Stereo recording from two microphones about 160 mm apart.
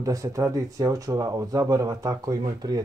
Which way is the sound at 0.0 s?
20° right (ahead or behind).